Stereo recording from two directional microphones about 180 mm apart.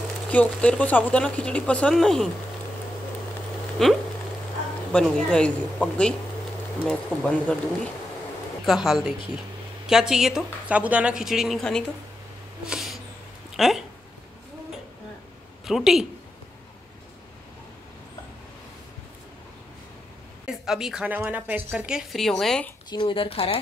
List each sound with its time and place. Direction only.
0.3 s speech: 5° left (ahead or behind)
3.8 s a woman's voice: centre (ahead or behind)
8.6 s a woman's voice: centre (ahead or behind)
12.6 s a sound: centre (ahead or behind)
13.6 s a woman's voice: centre (ahead or behind)
15.6 s a woman's voice: centre (ahead or behind)
20.4 s a woman's voice: centre (ahead or behind)
22.8 s speech: 25° left (ahead or behind)